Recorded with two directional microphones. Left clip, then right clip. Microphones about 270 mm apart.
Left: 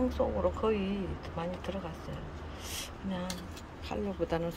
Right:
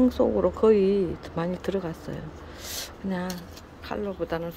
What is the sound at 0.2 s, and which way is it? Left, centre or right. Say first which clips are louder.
Speech: right 6 dB; right.